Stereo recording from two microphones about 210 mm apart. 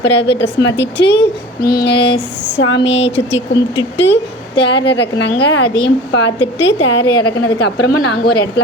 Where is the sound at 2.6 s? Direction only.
60° left (ahead or behind).